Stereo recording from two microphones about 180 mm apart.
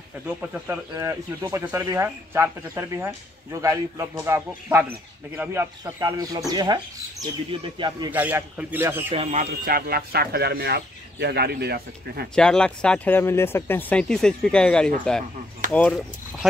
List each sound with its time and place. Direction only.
0.4 s speech: 5° right (ahead or behind); by 8.1 s 25° right (ahead or behind)
8.1 s speech: 10° right (ahead or behind)
9.1 s speech: 35° right (ahead or behind); by 12.3 s 60° right (ahead or behind)
12.4 s speech: 5° left (ahead or behind)